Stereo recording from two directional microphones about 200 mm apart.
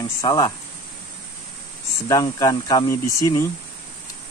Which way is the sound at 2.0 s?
15° left (ahead or behind).